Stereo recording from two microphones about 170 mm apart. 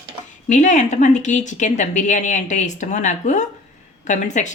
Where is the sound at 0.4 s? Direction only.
45° left (ahead or behind).